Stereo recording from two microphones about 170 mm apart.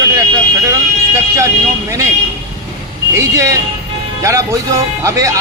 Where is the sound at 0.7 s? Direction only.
20° right (ahead or behind).